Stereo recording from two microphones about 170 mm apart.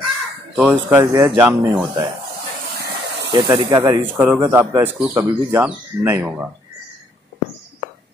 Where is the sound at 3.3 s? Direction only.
25° right (ahead or behind).